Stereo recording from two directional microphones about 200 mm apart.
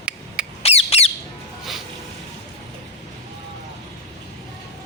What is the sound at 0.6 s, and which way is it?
Squawk, 30° left (ahead or behind).